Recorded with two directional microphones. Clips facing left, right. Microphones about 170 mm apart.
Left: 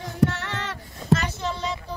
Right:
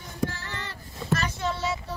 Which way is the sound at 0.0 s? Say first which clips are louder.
Left 8 dB; 85° left.